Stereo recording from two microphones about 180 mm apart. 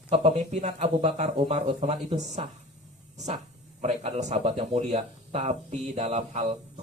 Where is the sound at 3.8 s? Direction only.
40° right (ahead or behind).